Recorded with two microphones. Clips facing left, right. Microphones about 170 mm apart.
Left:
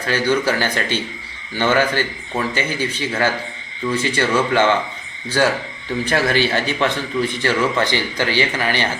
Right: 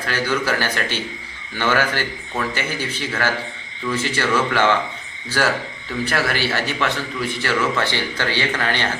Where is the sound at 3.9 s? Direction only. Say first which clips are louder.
Left 3 dB; 15° left (ahead or behind).